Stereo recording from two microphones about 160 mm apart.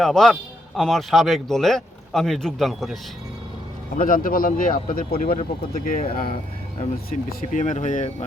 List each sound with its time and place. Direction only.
0.0 s speech: 5° left (ahead or behind)
3.9 s speech: 60° left (ahead or behind)
7.6 s speech: 50° left (ahead or behind)